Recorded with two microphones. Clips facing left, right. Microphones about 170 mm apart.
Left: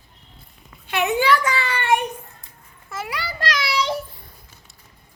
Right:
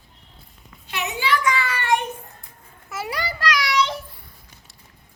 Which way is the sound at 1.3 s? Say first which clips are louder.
Left 2 dB; 35° left (ahead or behind).